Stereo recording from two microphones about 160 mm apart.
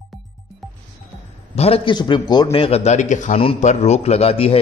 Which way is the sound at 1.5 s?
40° left (ahead or behind).